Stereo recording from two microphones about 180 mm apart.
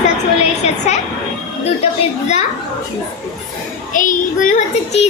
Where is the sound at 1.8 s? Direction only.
40° left (ahead or behind).